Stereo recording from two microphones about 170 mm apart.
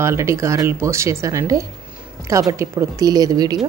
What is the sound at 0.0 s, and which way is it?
Speech, 15° right (ahead or behind).